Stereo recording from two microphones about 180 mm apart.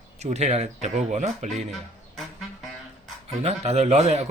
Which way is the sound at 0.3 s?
40° right (ahead or behind).